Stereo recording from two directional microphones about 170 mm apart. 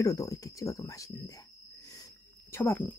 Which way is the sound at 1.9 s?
20° left (ahead or behind).